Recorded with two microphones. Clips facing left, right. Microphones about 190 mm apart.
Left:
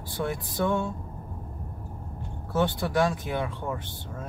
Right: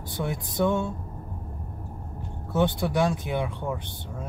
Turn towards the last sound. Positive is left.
turn(degrees=-15)  # may be behind; listen again after turning